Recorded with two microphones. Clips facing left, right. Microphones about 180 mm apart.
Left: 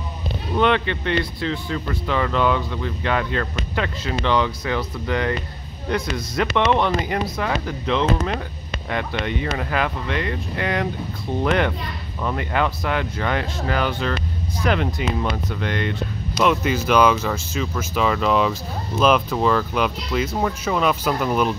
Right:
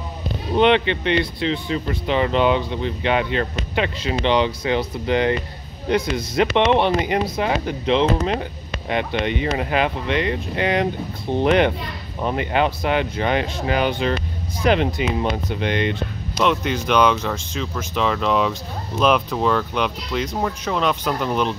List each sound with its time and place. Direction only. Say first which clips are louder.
0.6 s speech: right 3 dB; 25° right (ahead or behind)
16.3 s speech: left 1 dB; 5° left (ahead or behind)